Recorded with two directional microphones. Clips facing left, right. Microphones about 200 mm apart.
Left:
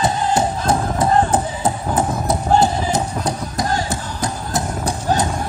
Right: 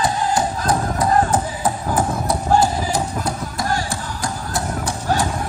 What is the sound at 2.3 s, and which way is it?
Music, 25° left (ahead or behind).